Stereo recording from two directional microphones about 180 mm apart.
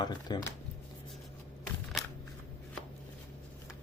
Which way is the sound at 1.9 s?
Centre (ahead or behind).